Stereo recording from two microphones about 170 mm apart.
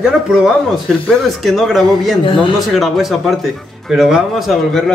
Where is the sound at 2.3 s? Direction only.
30° left (ahead or behind).